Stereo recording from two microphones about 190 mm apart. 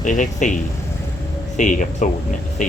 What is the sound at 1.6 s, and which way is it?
Speech, 40° left (ahead or behind).